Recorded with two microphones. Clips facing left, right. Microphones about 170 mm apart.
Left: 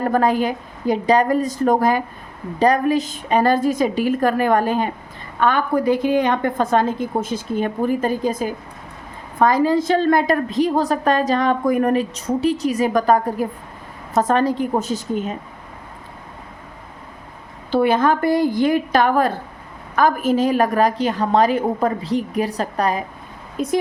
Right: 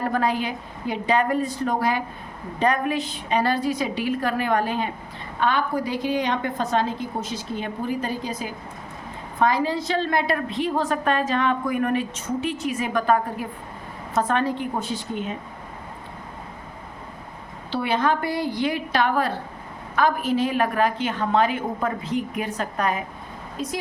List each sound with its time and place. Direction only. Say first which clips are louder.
0.0 s a woman's voice: left 6 dB; 45° left (ahead or behind)
17.7 s a woman's voice: left 6 dB; 45° left (ahead or behind)
23.6 s a woman's voice: left 6 dB; 50° left (ahead or behind)